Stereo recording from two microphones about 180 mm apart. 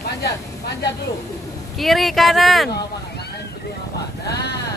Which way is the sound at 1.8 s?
Centre (ahead or behind).